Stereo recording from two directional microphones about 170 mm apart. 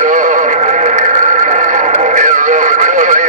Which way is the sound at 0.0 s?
50° right (ahead or behind).